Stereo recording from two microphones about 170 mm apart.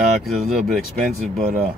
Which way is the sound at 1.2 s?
40° right (ahead or behind).